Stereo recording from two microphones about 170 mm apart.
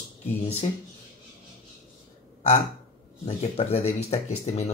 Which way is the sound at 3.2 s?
40° left (ahead or behind).